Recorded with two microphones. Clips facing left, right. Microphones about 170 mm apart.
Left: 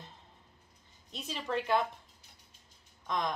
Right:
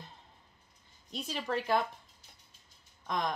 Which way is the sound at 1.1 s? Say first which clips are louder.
Right 1 dB; centre (ahead or behind).